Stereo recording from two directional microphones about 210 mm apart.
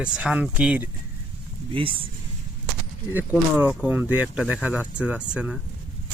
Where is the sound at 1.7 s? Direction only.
25° right (ahead or behind).